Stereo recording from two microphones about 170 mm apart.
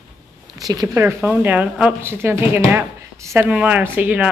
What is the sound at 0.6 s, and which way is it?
Speech, 20° right (ahead or behind).